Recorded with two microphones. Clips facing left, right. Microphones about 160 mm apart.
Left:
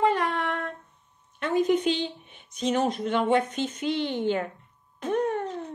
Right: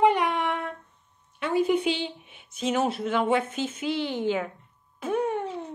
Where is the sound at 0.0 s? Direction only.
15° right (ahead or behind).